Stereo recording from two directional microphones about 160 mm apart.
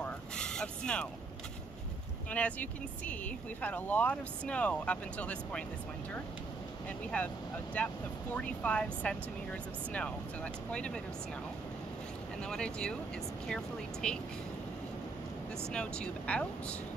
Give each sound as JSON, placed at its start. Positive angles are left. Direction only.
{"t": 0.0, "sound": "a sound", "side_deg": 5}
{"t": 2.3, "sound": "speech", "side_deg": 10}
{"t": 7.1, "sound": "speech", "side_deg": 10}
{"t": 12.4, "sound": "speech", "side_deg": 5}
{"t": 15.7, "sound": "speech", "side_deg": 5}